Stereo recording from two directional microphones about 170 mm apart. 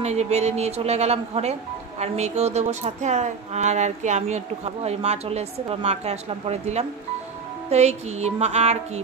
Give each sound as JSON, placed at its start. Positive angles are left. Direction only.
{"t": 0.0, "sound": "speech", "side_deg": -40}